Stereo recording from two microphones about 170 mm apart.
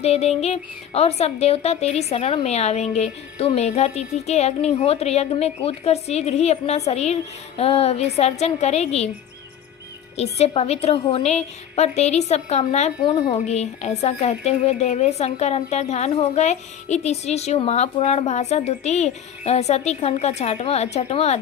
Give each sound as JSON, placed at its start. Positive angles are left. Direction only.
{"t": 0.0, "sound": "speech", "side_deg": 40}
{"t": 10.3, "sound": "speech", "side_deg": 40}
{"t": 13.0, "sound": "speech", "side_deg": 25}
{"t": 13.4, "sound": "speech", "side_deg": 40}